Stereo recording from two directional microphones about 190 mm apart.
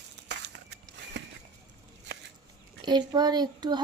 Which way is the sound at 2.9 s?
20° right (ahead or behind).